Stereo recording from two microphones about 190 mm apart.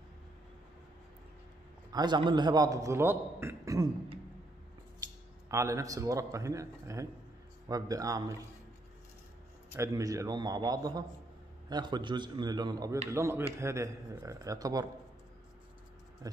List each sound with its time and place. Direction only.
1.9 s a man's voice: 20° right (ahead or behind)
5.5 s a man's voice: 15° right (ahead or behind)
9.8 s a man's voice: 15° right (ahead or behind)